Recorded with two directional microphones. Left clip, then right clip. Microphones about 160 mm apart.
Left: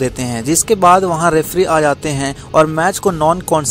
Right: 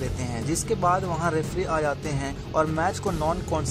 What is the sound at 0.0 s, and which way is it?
Speech, 55° left (ahead or behind).